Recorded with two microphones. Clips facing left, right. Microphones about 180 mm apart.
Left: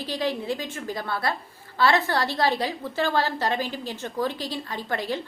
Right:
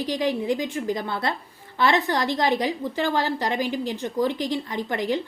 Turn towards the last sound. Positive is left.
turn(degrees=-15)  # may be behind; listen again after turning